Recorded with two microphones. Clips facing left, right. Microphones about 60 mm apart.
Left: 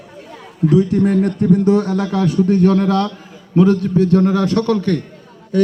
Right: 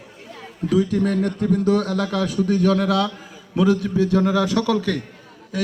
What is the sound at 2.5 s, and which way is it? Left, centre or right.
Speech, right.